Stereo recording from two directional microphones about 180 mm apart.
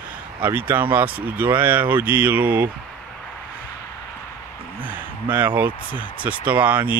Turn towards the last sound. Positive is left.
turn(degrees=-10)  # may be behind; listen again after turning